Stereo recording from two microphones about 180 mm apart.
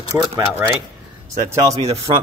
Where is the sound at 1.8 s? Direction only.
35° right (ahead or behind).